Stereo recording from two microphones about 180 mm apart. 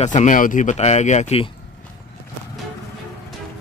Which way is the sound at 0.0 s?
40° left (ahead or behind).